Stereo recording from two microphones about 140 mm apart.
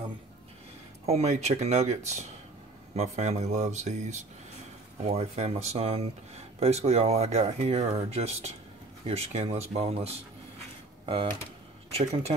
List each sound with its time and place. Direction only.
1.0 s speech: 50° right (ahead or behind)
11.9 s speech: 50° right (ahead or behind)